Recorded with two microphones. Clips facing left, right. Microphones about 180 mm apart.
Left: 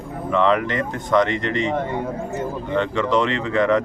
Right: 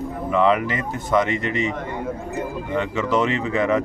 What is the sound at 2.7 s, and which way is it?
Speech, 5° right (ahead or behind).